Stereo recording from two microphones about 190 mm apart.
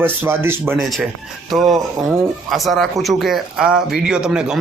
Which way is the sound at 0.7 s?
Centre (ahead or behind).